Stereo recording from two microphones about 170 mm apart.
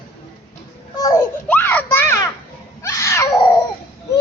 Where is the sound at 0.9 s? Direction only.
20° left (ahead or behind).